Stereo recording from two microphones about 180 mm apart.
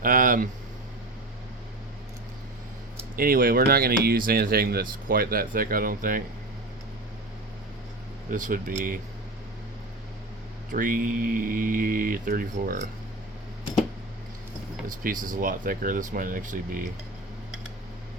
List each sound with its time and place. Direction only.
0.0 s speech: 50° right (ahead or behind)
3.2 s speech: 55° right (ahead or behind)
8.3 s speech: 45° right (ahead or behind)
10.7 s speech: 50° right (ahead or behind)
14.8 s speech: 50° right (ahead or behind)